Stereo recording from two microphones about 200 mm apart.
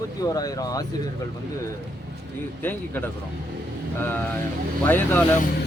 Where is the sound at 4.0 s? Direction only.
10° left (ahead or behind).